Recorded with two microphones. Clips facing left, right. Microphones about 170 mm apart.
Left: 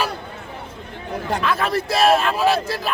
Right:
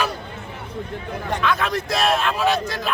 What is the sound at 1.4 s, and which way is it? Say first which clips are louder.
Speech: even; 5° left (ahead or behind).